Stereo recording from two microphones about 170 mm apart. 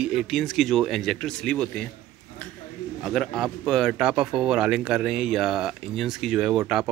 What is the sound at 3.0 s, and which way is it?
Speech, centre (ahead or behind).